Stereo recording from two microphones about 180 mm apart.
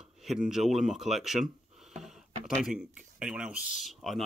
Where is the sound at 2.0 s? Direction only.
Centre (ahead or behind).